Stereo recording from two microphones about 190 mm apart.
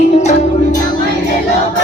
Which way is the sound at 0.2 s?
40° left (ahead or behind).